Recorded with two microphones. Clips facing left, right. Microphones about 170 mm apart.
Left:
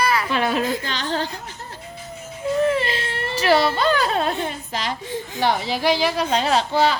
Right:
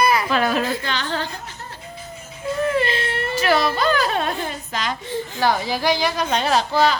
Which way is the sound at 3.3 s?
30° left (ahead or behind).